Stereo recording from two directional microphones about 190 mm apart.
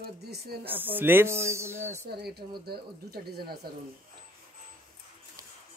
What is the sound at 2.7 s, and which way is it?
Speech, 55° right (ahead or behind).